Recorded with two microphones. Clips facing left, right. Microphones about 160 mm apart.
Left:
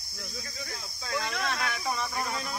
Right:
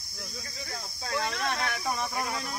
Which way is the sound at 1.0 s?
35° right (ahead or behind).